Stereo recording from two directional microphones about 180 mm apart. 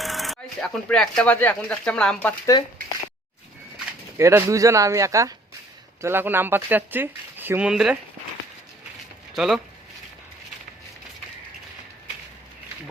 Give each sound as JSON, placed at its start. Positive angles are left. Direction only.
{"t": 0.0, "sound": "speech", "side_deg": 0}
{"t": 4.2, "sound": "speech", "side_deg": -15}
{"t": 9.3, "sound": "speech", "side_deg": 0}